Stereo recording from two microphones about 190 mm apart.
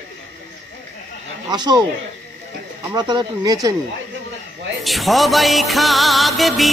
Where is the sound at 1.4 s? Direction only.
20° right (ahead or behind).